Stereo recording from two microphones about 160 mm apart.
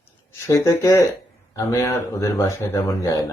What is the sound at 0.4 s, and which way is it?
Speech, 15° left (ahead or behind).